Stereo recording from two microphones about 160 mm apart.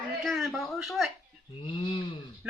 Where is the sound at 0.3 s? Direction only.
Centre (ahead or behind).